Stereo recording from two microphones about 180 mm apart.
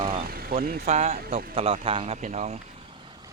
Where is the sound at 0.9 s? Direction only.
40° right (ahead or behind).